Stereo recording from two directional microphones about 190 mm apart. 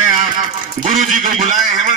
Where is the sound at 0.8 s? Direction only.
40° right (ahead or behind).